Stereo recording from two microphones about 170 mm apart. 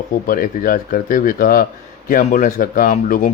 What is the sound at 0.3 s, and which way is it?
Speech, 55° left (ahead or behind).